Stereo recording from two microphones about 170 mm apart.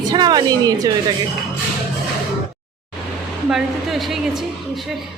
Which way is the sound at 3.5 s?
Centre (ahead or behind).